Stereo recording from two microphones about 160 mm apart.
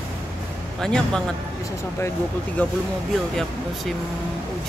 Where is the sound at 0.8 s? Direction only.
5° left (ahead or behind).